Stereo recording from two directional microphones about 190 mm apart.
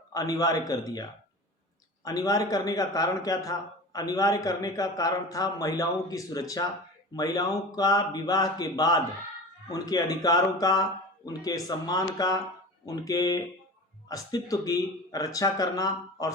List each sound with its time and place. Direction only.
0.1 s a man's voice: 20° left (ahead or behind)
2.0 s a man's voice: 20° left (ahead or behind)